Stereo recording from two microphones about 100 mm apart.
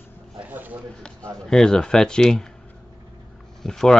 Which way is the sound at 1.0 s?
10° left (ahead or behind).